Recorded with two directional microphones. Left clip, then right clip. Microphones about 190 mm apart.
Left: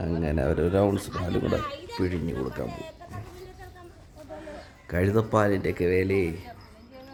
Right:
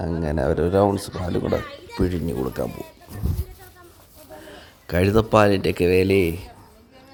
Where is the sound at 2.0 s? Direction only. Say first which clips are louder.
Right 5 dB; 35° right (ahead or behind).